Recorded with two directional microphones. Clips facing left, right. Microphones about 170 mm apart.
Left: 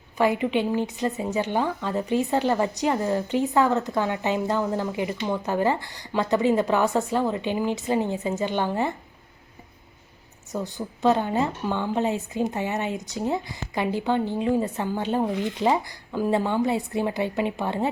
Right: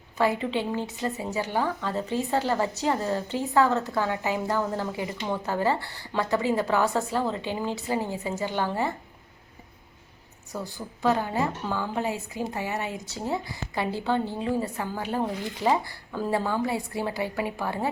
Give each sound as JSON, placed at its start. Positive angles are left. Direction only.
{"t": 0.2, "sound": "a woman's voice", "side_deg": 15}
{"t": 10.5, "sound": "speech", "side_deg": 20}